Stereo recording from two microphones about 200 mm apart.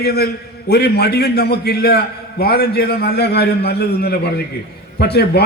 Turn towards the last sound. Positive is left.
turn(degrees=55)  # may be behind; listen again after turning